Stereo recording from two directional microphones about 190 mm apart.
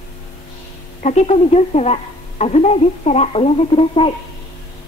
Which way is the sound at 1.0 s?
35° left (ahead or behind).